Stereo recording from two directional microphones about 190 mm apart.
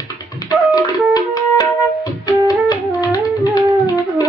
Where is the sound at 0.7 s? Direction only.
20° left (ahead or behind).